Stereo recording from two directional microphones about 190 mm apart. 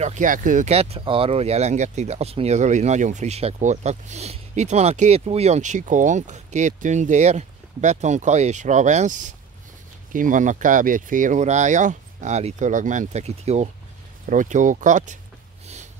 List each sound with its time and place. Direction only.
0.0 s speech: 40° right (ahead or behind)
15.6 s snort: 35° right (ahead or behind)